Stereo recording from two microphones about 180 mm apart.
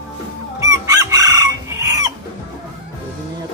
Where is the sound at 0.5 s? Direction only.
15° right (ahead or behind).